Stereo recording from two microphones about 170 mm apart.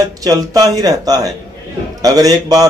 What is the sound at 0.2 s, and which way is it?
Speech, 20° right (ahead or behind).